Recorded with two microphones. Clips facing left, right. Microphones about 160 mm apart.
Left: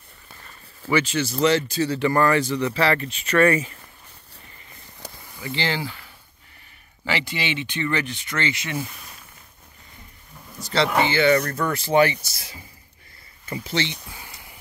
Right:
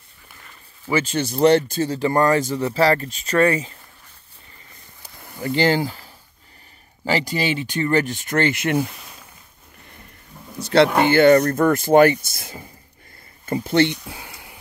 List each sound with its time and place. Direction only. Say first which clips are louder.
1.0 s speech: right 4 dB; 50° right (ahead or behind)
2.0 s speech: right 2 dB; 20° right (ahead or behind)
2.3 s speech: right 2 dB; 45° right (ahead or behind)
5.4 s speech: right 8 dB; 45° right (ahead or behind)
7.1 s speech: right 5 dB; 40° right (ahead or behind)
10.6 s speech: right 6 dB; 60° right (ahead or behind)